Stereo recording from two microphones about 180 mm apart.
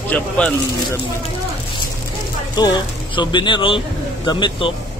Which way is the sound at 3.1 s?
25° left (ahead or behind).